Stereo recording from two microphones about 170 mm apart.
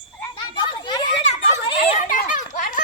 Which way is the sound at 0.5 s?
30° left (ahead or behind).